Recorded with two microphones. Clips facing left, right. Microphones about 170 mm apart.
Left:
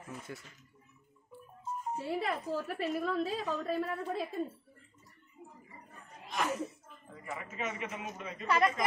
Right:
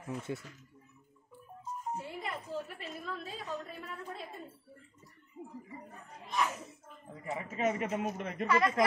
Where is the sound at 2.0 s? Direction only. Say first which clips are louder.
Left 7 dB; 75° left (ahead or behind).